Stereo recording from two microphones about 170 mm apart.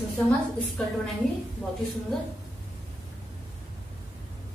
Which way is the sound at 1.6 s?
10° left (ahead or behind).